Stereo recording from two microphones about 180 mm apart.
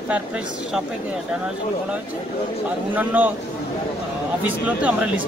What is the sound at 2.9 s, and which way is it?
Speech, 10° right (ahead or behind).